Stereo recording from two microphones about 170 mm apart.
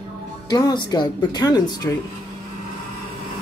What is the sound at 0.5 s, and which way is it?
Speech, 20° left (ahead or behind).